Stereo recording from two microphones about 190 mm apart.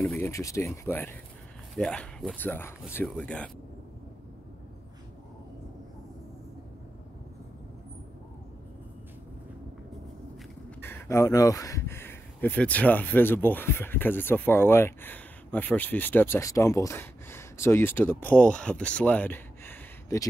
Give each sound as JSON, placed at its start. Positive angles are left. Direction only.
{"t": 0.0, "sound": "speech", "side_deg": 10}
{"t": 10.8, "sound": "speech", "side_deg": 10}